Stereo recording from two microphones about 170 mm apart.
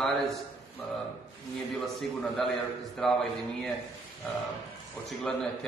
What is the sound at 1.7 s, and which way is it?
A man's voice, centre (ahead or behind).